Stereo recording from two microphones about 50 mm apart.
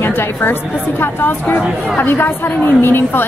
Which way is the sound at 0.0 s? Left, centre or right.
Left.